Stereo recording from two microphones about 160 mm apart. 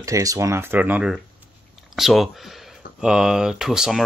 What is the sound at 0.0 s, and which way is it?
Speech, 20° right (ahead or behind).